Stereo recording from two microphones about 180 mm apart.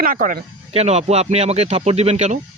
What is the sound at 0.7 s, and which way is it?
Speech, 35° right (ahead or behind).